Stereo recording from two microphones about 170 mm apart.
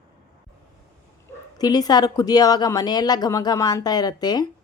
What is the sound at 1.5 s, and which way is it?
A woman's voice, 25° left (ahead or behind).